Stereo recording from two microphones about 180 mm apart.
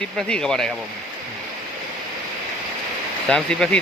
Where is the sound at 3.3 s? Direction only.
5° left (ahead or behind).